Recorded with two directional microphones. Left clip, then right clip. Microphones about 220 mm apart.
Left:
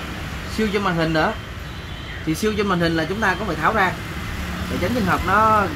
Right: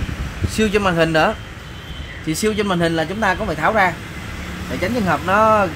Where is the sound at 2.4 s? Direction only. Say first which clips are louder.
Right 2 dB; 40° right (ahead or behind).